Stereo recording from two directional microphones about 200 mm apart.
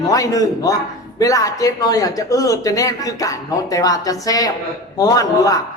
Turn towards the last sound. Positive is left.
turn(degrees=15)  # may be behind; listen again after turning